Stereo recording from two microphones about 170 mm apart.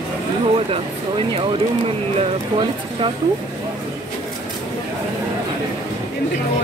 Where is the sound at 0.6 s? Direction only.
35° right (ahead or behind).